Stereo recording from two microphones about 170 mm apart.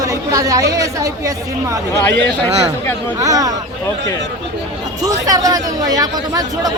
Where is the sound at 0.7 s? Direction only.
20° right (ahead or behind).